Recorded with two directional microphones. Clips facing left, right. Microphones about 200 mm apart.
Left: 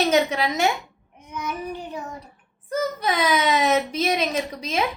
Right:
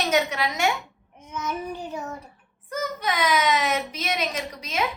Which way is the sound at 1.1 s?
15° left (ahead or behind).